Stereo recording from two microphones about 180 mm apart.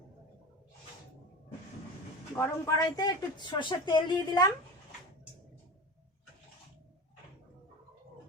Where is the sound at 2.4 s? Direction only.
20° left (ahead or behind).